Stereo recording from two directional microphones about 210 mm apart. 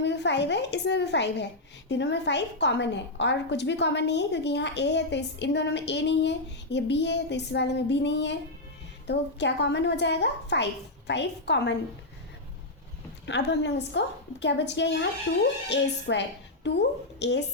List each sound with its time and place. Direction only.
0.0 s a woman's voice: 55° left (ahead or behind)
13.2 s a woman's voice: 55° left (ahead or behind)